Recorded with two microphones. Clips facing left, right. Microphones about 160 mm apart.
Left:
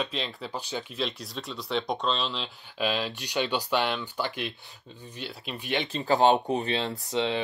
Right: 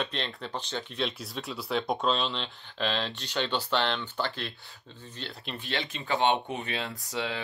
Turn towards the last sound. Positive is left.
turn(degrees=25)  # may be behind; listen again after turning